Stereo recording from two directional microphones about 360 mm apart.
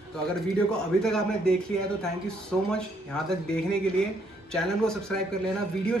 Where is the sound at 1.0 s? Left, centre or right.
Centre.